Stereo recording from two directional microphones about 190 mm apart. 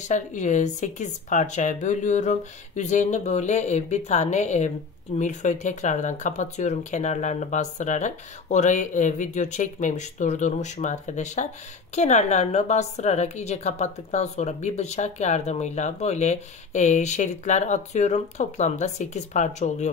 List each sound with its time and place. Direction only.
0.1 s a woman's voice: 40° left (ahead or behind)